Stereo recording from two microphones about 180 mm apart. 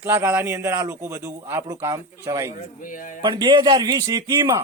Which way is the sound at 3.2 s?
25° right (ahead or behind).